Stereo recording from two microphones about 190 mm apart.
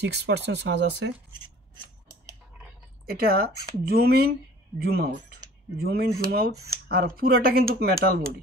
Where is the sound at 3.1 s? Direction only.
55° right (ahead or behind).